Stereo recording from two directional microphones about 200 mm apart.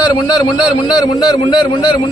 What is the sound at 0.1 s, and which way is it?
A man's voice, 20° left (ahead or behind).